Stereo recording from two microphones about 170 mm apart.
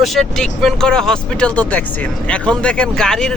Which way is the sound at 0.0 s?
Centre (ahead or behind).